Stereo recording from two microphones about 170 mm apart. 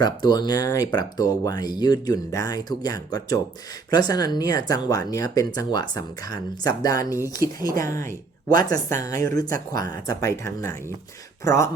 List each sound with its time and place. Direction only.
0.0 s speech: 25° left (ahead or behind)